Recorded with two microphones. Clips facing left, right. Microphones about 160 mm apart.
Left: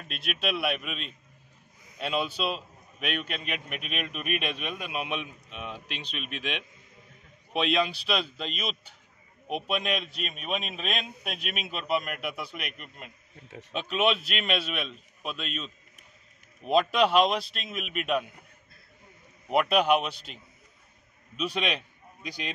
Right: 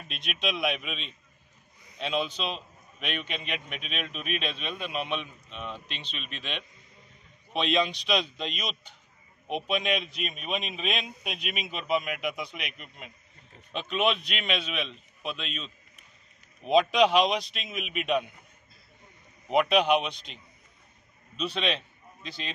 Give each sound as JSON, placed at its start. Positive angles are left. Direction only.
{"t": 0.1, "sound": "a man's voice", "side_deg": 0}
{"t": 13.5, "sound": "speech", "side_deg": 90}
{"t": 13.7, "sound": "a man's voice", "side_deg": 5}
{"t": 19.5, "sound": "a man's voice", "side_deg": 5}
{"t": 21.4, "sound": "a man's voice", "side_deg": 10}